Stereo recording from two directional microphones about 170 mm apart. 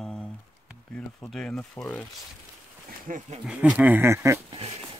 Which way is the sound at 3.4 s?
5° right (ahead or behind).